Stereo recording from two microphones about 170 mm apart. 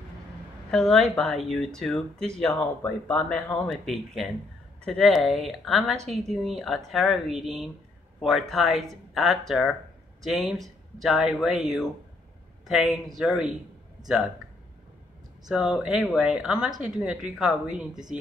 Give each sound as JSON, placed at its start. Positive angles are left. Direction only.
{"t": 0.7, "sound": "speech", "side_deg": 5}
{"t": 15.4, "sound": "speech", "side_deg": -5}